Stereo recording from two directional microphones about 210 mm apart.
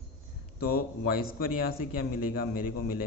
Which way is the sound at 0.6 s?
45° left (ahead or behind).